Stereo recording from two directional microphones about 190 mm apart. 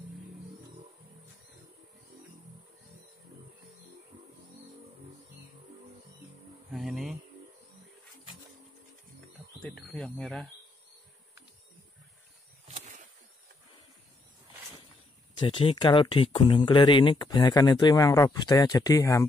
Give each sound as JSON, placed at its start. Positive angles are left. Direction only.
{"t": 6.7, "sound": "speech", "side_deg": 0}
{"t": 9.6, "sound": "cricket", "side_deg": 0}
{"t": 12.6, "sound": "a sound", "side_deg": -35}
{"t": 15.3, "sound": "speech", "side_deg": 30}